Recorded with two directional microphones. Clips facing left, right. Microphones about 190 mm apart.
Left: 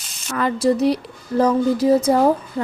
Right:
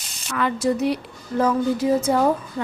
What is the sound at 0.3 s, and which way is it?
A woman's voice, 40° left (ahead or behind).